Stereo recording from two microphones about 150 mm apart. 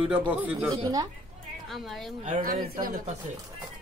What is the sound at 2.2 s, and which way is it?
Speech, 55° right (ahead or behind).